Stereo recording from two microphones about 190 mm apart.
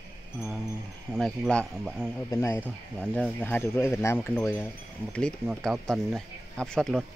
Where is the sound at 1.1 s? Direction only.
Centre (ahead or behind).